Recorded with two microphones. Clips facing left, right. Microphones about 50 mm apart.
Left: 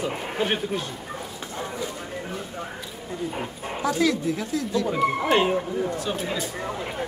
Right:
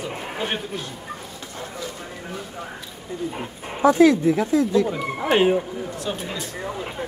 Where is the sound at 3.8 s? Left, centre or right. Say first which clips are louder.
Right 8 dB; right.